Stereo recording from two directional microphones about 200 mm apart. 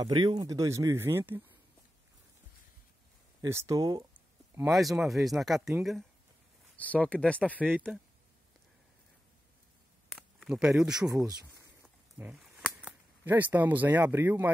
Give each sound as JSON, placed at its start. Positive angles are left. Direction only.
{"t": 0.0, "sound": "speech", "side_deg": -20}
{"t": 3.3, "sound": "speech", "side_deg": -15}
{"t": 4.6, "sound": "speech", "side_deg": 0}
{"t": 7.5, "sound": "speech", "side_deg": -10}
{"t": 10.0, "sound": "a sound", "side_deg": 0}
{"t": 11.1, "sound": "speech", "side_deg": -15}
{"t": 11.8, "sound": "cap gun", "side_deg": -5}